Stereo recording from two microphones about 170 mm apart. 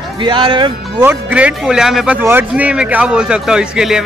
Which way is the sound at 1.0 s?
10° right (ahead or behind).